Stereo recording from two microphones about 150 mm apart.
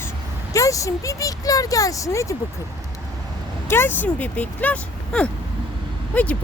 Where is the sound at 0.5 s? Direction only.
20° left (ahead or behind).